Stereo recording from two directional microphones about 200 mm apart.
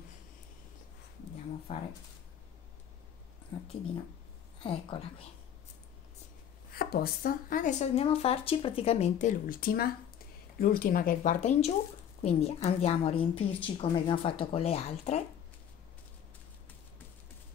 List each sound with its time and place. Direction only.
1.7 s a woman's voice: 30° left (ahead or behind)
4.6 s a woman's voice: 25° left (ahead or behind)
6.7 s a woman's voice: 50° left (ahead or behind); by 15.2 s 30° left (ahead or behind)